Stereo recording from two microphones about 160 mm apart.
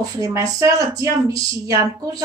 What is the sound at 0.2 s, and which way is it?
Speech, 20° right (ahead or behind).